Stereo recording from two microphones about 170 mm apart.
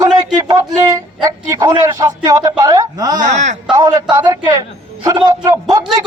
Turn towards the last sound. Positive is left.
turn(degrees=-20)  # may be behind; listen again after turning